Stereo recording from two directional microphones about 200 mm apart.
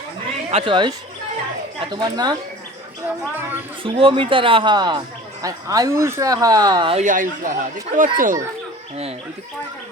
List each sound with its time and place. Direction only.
0.5 s speech: 25° right (ahead or behind)
3.8 s speech: 25° right (ahead or behind)
7.0 s speech: 40° right (ahead or behind)